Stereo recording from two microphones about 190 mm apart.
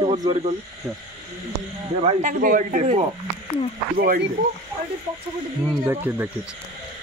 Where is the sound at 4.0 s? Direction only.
55° right (ahead or behind).